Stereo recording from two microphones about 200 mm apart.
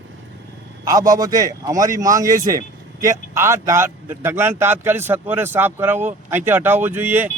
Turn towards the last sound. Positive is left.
turn(degrees=-10)  # may be behind; listen again after turning